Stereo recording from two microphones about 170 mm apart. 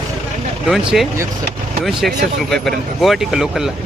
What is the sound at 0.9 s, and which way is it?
Speech, centre (ahead or behind).